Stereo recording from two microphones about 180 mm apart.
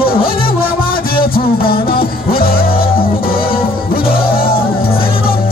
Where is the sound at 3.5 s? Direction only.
30° left (ahead or behind).